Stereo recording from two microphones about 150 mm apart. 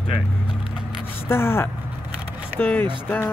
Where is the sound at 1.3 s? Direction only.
15° left (ahead or behind).